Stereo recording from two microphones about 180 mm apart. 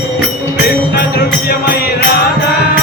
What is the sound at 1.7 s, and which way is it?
Music, 60° left (ahead or behind).